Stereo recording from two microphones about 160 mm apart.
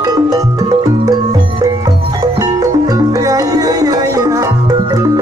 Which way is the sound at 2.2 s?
25° right (ahead or behind).